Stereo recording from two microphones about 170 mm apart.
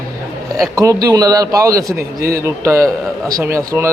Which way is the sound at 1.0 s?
20° right (ahead or behind).